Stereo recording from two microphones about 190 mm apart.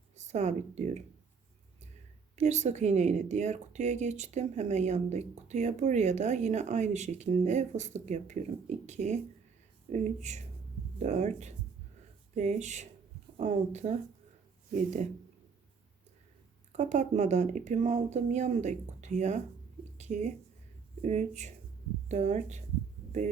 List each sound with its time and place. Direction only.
0.3 s speech: 35° right (ahead or behind)
2.3 s speech: 35° right (ahead or behind)
16.7 s speech: 40° right (ahead or behind)